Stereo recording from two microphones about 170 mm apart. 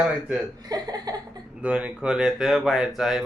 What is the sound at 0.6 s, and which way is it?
Speech, 25° right (ahead or behind).